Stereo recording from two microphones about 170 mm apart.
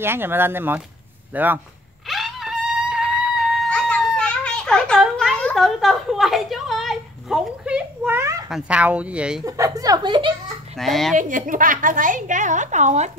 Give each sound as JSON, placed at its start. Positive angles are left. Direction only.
{"t": 0.0, "sound": "speech", "side_deg": -15}
{"t": 2.0, "sound": "music", "side_deg": 0}
{"t": 8.5, "sound": "speech", "side_deg": -5}
{"t": 9.4, "sound": "a woman's voice", "side_deg": -20}
{"t": 10.8, "sound": "speech", "side_deg": 0}
{"t": 11.1, "sound": "a woman's voice", "side_deg": -50}